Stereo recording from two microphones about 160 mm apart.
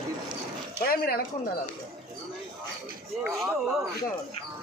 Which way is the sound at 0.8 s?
70° left (ahead or behind).